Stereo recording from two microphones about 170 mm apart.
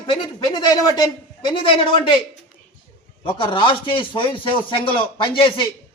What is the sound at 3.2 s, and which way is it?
Speech, 30° left (ahead or behind).